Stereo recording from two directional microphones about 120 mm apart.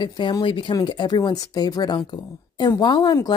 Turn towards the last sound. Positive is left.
turn(degrees=35)  # may be behind; listen again after turning